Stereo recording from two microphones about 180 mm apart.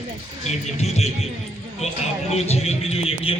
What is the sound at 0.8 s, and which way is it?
A man's voice, 35° left (ahead or behind).